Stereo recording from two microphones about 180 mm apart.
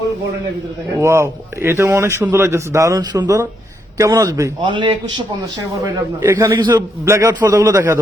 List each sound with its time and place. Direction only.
0.9 s a man's voice: 15° right (ahead or behind)